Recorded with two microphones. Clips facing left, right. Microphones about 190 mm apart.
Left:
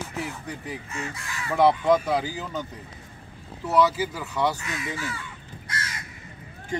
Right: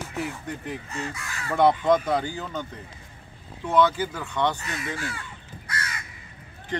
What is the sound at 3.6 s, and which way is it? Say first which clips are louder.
Speech: even; 5° left (ahead or behind).